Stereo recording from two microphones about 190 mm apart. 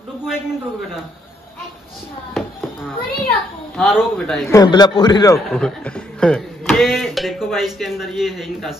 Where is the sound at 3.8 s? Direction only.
Centre (ahead or behind).